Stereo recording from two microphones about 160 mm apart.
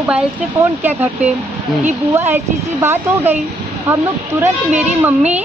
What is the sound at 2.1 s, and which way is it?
A woman's voice, 15° right (ahead or behind).